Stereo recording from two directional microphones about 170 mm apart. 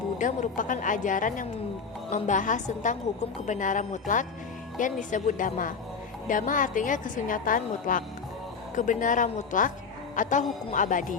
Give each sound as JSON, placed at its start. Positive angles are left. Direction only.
{"t": 0.2, "sound": "a woman's voice", "side_deg": 50}